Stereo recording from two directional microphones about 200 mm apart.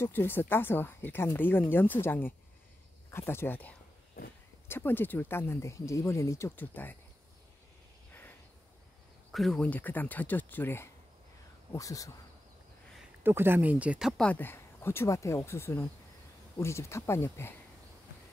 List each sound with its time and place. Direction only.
0.0 s speech: 10° left (ahead or behind)
8.1 s a sound: 10° left (ahead or behind)
9.3 s speech: centre (ahead or behind); by 12.1 s 15° left (ahead or behind)
13.2 s speech: 10° right (ahead or behind); by 17.6 s 10° left (ahead or behind)